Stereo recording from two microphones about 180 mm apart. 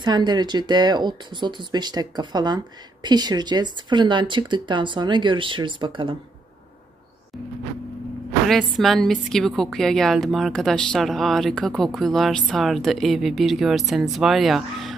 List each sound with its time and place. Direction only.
0.0 s speech: 25° right (ahead or behind)
8.5 s a woman's voice: centre (ahead or behind)